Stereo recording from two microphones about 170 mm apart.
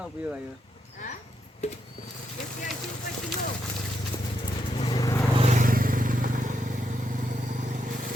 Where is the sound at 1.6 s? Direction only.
40° left (ahead or behind).